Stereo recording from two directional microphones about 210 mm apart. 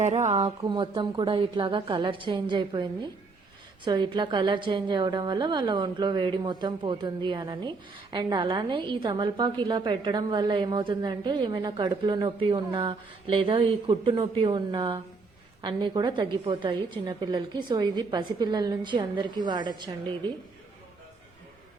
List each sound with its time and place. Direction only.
0.0 s speech: 35° right (ahead or behind)
0.3 s a woman's voice: 20° right (ahead or behind)